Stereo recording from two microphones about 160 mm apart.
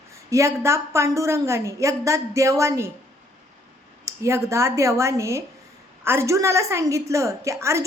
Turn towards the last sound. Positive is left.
turn(degrees=-15)  # may be behind; listen again after turning